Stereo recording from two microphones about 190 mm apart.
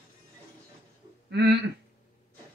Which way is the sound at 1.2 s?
60° right (ahead or behind).